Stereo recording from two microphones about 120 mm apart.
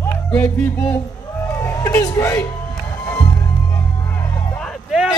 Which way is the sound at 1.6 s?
20° left (ahead or behind).